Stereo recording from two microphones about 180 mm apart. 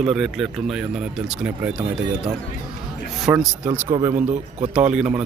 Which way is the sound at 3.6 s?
10° right (ahead or behind).